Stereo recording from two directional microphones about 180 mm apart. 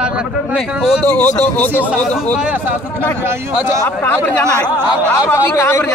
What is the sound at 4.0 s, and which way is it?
A man's voice, 10° left (ahead or behind).